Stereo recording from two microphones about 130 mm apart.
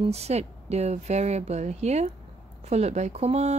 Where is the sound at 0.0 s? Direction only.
55° right (ahead or behind).